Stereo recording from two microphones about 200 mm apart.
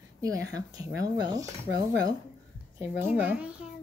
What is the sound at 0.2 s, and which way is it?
Speech, 20° right (ahead or behind).